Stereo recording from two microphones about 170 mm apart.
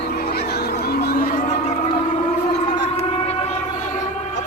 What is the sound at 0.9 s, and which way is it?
Music, 65° left (ahead or behind).